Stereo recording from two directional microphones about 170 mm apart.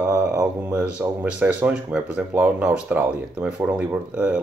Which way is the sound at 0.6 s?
10° right (ahead or behind).